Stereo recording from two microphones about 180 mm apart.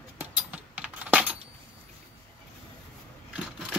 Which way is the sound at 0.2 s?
10° right (ahead or behind).